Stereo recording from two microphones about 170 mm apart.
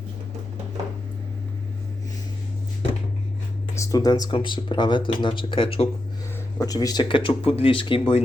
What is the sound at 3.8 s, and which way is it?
Speech, 20° left (ahead or behind).